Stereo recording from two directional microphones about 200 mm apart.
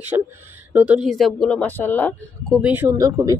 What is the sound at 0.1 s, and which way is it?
Speech, 15° right (ahead or behind).